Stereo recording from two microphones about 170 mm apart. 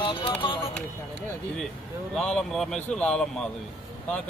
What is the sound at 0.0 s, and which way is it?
Music, 30° left (ahead or behind).